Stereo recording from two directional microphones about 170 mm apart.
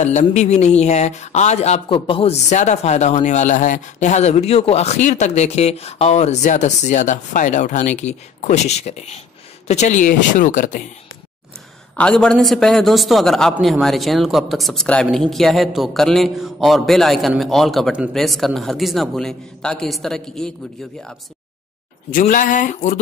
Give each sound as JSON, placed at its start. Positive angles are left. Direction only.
{"t": 0.0, "sound": "speech", "side_deg": 40}
{"t": 12.0, "sound": "a man's voice", "side_deg": 5}
{"t": 22.1, "sound": "speech", "side_deg": 50}